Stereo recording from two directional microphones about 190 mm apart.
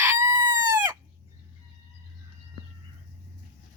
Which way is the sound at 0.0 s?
15° right (ahead or behind).